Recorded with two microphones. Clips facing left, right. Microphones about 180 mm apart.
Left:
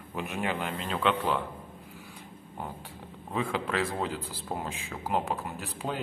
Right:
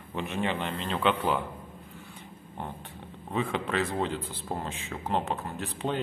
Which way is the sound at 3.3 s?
Centre (ahead or behind).